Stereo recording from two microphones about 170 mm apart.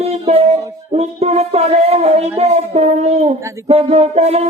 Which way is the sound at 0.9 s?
40° right (ahead or behind).